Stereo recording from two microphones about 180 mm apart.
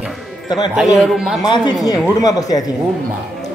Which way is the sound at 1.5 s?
25° left (ahead or behind).